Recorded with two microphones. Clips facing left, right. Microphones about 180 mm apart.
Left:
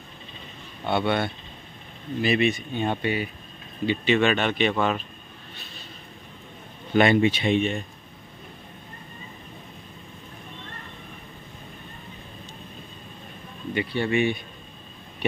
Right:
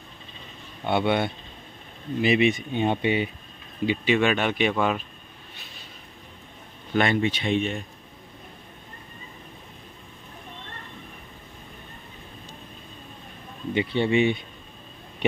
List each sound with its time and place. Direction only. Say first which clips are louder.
0.8 s speech: right 1 dB; 15° right (ahead or behind)
7.0 s speech: left 4 dB; 10° left (ahead or behind)
13.7 s speech: right 2 dB; 20° right (ahead or behind)